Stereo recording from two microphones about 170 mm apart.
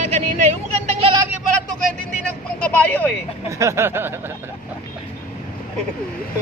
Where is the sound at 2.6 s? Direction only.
10° left (ahead or behind).